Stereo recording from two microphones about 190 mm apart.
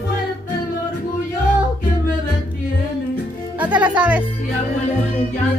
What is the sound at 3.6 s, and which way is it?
Music, 5° right (ahead or behind).